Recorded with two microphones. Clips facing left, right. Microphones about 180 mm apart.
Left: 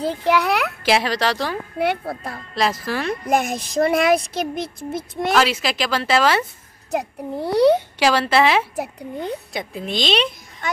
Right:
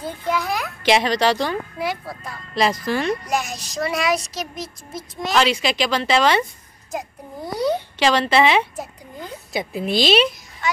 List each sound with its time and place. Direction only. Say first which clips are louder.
0.0 s a child's voice: left 5 dB; 75° left (ahead or behind)
0.8 s speech: right 3 dB; 5° left (ahead or behind)
1.8 s speech: left 5 dB; 60° left (ahead or behind)
2.5 s speech: right 2 dB; centre (ahead or behind)
3.1 s speech: left 3 dB; 55° left (ahead or behind)
5.3 s speech: right 1 dB; 5° left (ahead or behind)
6.9 s a child's voice: left 6 dB; 70° left (ahead or behind)
8.0 s speech: right 4 dB; 5° left (ahead or behind)
8.7 s speech: left 6 dB; 65° left (ahead or behind)
9.5 s speech: right 4 dB; 5° right (ahead or behind)
10.6 s a sound: right 2 dB; 55° left (ahead or behind)